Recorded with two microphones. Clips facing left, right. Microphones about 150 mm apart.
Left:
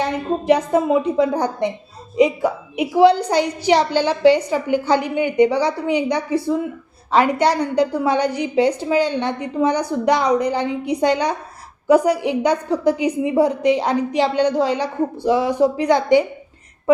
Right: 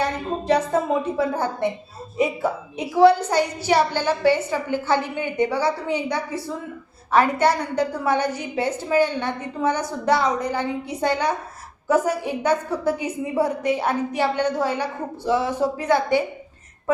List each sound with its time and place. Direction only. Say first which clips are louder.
0.0 s a woman's voice: left 4 dB; 15° left (ahead or behind)